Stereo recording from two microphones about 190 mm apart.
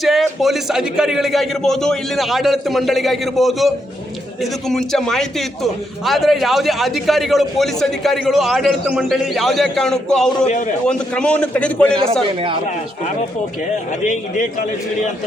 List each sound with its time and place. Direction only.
0.0 s a man's voice: centre (ahead or behind)
4.7 s a man's voice: centre (ahead or behind)
14.1 s a man's voice: 45° left (ahead or behind)